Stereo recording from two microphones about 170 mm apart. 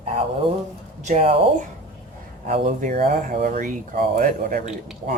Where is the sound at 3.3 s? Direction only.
60° right (ahead or behind).